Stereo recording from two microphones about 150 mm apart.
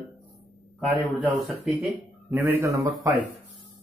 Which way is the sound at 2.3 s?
20° right (ahead or behind).